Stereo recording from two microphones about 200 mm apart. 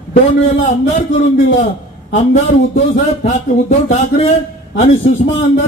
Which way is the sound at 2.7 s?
35° left (ahead or behind).